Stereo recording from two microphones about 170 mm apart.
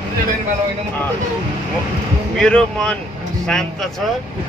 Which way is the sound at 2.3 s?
5° left (ahead or behind).